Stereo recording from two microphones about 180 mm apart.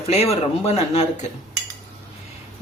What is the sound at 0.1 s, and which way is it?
Speech, 35° left (ahead or behind).